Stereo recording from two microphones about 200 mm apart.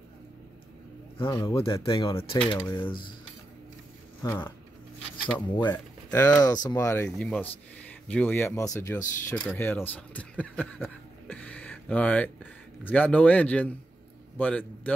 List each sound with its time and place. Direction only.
1.1 s a man's voice: 25° left (ahead or behind)
4.2 s speech: 10° left (ahead or behind)
5.6 s a man's voice: 20° left (ahead or behind)